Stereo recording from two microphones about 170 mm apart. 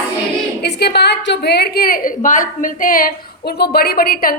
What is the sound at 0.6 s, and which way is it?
A woman's voice, 75° left (ahead or behind).